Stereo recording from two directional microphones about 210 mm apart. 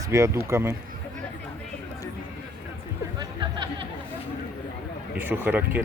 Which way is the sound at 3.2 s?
20° right (ahead or behind).